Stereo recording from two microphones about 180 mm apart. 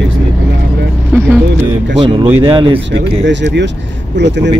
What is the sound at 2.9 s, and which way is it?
Speech, 80° right.